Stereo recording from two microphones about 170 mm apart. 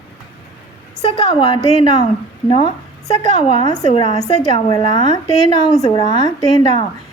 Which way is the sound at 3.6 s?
25° left (ahead or behind).